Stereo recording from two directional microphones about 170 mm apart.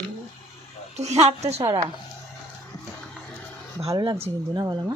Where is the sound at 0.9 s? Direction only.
40° right (ahead or behind).